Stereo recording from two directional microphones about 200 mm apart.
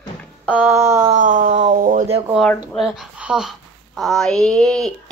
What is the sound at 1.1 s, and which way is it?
Speech, 40° right (ahead or behind).